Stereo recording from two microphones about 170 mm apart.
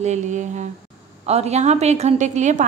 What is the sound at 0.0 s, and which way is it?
A woman's voice, 45° right (ahead or behind).